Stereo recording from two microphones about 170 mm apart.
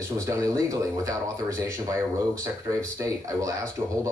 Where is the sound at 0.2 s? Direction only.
20° right (ahead or behind).